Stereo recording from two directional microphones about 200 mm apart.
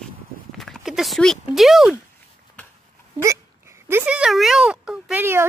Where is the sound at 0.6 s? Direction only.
Centre (ahead or behind).